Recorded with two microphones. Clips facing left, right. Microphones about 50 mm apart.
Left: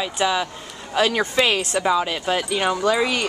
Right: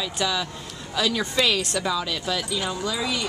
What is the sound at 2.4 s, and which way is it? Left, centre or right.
Speech, left.